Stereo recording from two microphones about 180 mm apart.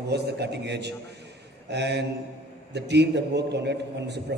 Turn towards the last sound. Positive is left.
turn(degrees=-70)  # may be behind; listen again after turning